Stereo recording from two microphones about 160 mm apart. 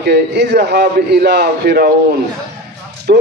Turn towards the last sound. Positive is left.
turn(degrees=-90)